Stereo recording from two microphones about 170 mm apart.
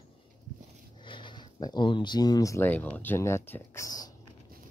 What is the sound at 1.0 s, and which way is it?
Speech, 30° left (ahead or behind).